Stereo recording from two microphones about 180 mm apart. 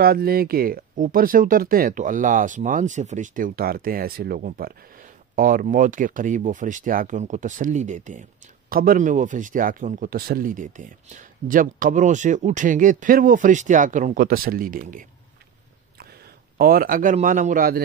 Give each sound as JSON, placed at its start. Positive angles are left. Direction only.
{"t": 0.0, "sound": "speech", "side_deg": -55}
{"t": 16.5, "sound": "speech", "side_deg": -55}